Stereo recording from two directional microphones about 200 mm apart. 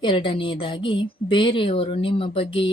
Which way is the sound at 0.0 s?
25° left (ahead or behind).